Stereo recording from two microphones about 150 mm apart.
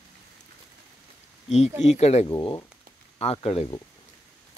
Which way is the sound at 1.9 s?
45° left (ahead or behind).